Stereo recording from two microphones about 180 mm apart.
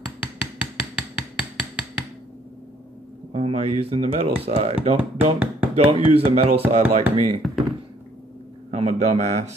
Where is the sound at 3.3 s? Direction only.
35° right (ahead or behind).